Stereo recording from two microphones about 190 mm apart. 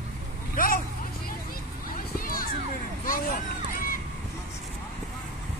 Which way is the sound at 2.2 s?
50° left (ahead or behind).